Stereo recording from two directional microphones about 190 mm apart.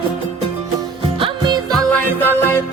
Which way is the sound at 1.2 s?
25° right (ahead or behind).